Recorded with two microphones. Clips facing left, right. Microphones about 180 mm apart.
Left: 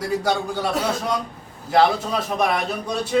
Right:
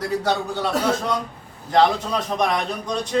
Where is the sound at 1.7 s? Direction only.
5° left (ahead or behind).